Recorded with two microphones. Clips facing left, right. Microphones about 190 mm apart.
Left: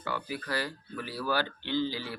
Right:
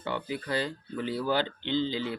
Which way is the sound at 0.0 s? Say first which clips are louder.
Right 3 dB; 25° right (ahead or behind).